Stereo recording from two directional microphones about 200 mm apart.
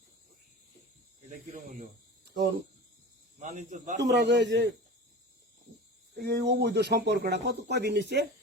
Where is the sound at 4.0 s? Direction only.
60° right (ahead or behind).